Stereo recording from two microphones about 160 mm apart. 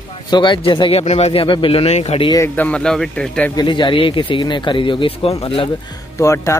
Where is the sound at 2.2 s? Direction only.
20° left (ahead or behind).